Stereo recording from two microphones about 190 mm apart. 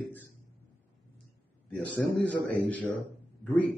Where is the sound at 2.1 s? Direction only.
5° left (ahead or behind).